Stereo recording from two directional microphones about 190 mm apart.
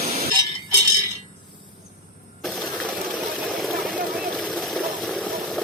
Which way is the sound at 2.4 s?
Centre (ahead or behind).